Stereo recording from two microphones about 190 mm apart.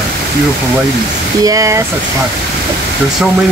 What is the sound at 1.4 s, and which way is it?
Speech, 20° right (ahead or behind).